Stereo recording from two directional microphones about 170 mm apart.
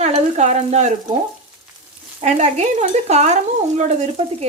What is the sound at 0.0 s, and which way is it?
Sizzle, 40° right (ahead or behind).